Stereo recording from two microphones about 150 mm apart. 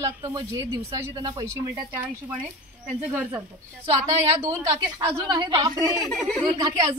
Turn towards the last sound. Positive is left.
turn(degrees=-25)  # may be behind; listen again after turning